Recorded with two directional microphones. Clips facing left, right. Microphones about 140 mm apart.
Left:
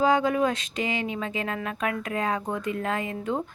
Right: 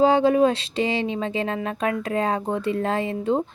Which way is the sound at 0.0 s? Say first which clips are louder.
Right 5 dB; 30° right (ahead or behind).